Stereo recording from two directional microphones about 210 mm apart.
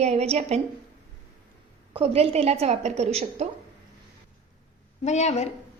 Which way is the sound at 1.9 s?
30° right (ahead or behind).